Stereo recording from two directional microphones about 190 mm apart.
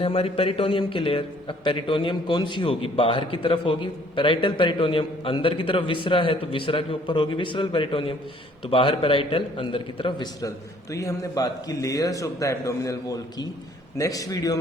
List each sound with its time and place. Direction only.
0.0 s a man's voice: 30° left (ahead or behind)